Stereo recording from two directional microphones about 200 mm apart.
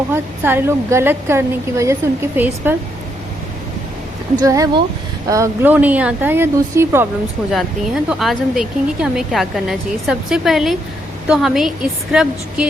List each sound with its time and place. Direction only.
0.1 s a woman's voice: 10° right (ahead or behind)
4.4 s a woman's voice: 15° right (ahead or behind)
7.5 s speech: centre (ahead or behind)